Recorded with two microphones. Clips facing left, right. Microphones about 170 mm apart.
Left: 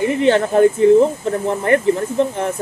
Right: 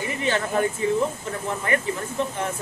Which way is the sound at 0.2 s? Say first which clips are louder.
Left 10 dB; 55° left (ahead or behind).